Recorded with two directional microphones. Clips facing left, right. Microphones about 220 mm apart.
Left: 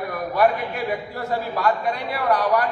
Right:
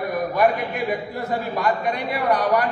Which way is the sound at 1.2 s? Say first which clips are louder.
Right 1 dB; 15° right (ahead or behind).